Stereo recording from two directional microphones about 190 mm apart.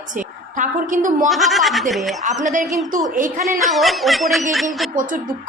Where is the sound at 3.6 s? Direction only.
Centre (ahead or behind).